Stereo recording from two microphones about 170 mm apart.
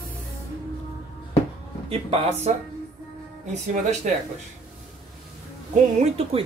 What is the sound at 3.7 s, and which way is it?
Speech, 45° right (ahead or behind).